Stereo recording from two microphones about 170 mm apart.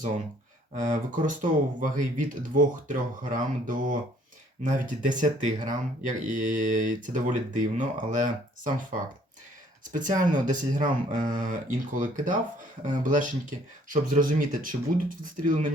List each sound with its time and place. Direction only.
0.7 s speech: 50° right (ahead or behind)